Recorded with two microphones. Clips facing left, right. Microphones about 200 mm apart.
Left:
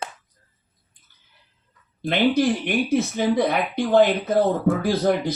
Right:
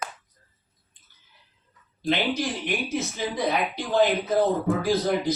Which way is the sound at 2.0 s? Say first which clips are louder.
Left 6 dB; 55° left (ahead or behind).